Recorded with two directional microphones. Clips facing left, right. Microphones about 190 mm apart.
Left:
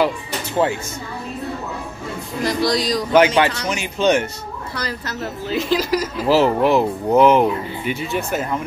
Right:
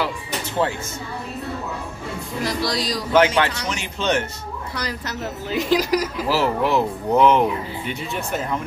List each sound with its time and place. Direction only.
2.4 s speech: centre (ahead or behind)
3.1 s speech: 10° left (ahead or behind)
4.7 s a woman's voice: 15° right (ahead or behind)
6.2 s speech: 20° left (ahead or behind)
7.1 s speech: 5° left (ahead or behind)